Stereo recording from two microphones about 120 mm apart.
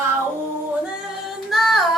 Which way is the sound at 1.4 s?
Centre (ahead or behind).